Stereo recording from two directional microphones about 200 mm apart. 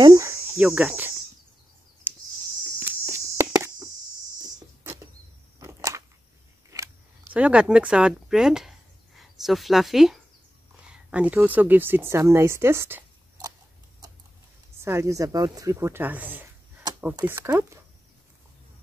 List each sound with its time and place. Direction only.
0.0 s insect: 15° right (ahead or behind)
0.7 s speech: 5° right (ahead or behind)
2.1 s cricket: 10° right (ahead or behind)
2.8 s insect: 15° right (ahead or behind)
4.4 s a sound: 20° right (ahead or behind)
6.7 s camera: 15° right (ahead or behind)
7.3 s a woman's voice: 5° right (ahead or behind)
14.8 s speech: 15° right (ahead or behind)